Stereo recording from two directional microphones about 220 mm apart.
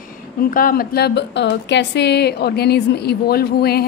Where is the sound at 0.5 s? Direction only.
40° left (ahead or behind).